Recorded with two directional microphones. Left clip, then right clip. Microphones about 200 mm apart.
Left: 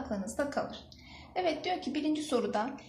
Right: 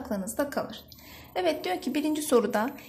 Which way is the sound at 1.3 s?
55° right (ahead or behind).